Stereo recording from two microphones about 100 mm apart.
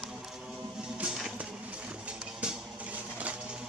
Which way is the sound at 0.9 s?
5° right (ahead or behind).